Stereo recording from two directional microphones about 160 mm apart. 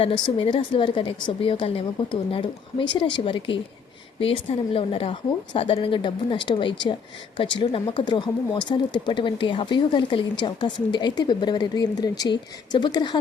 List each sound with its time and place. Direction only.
0.0 s a woman's voice: 35° left (ahead or behind)